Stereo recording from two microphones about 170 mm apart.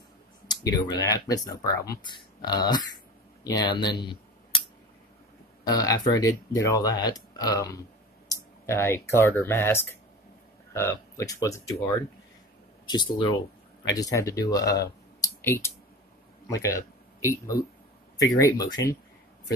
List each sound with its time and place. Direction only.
0.5 s speech: 25° left (ahead or behind)
5.6 s speech: 20° left (ahead or behind)
12.8 s speech: 25° left (ahead or behind)
15.1 s clicking: 20° left (ahead or behind)
16.4 s speech: 20° left (ahead or behind)